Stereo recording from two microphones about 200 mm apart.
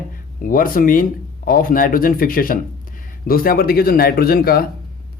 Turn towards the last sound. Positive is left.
turn(degrees=50)  # may be behind; listen again after turning